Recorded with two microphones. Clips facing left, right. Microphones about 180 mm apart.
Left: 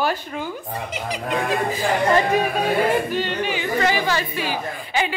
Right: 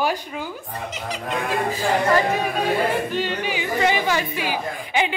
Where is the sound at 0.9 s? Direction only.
15° left (ahead or behind).